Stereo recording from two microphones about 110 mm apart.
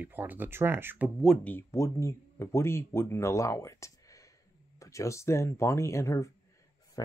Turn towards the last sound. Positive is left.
turn(degrees=25)  # may be behind; listen again after turning